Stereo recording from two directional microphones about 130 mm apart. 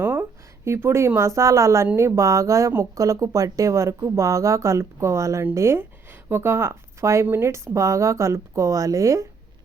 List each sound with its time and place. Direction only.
0.0 s speech: 15° right (ahead or behind)